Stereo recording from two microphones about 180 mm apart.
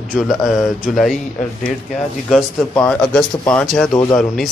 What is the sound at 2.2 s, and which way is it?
Speech, 5° left (ahead or behind).